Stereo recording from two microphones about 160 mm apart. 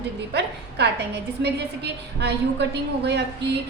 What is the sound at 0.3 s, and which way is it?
A woman's voice, 90° right.